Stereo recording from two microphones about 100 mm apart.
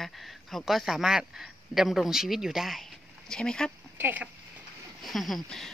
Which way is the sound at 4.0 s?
15° right (ahead or behind).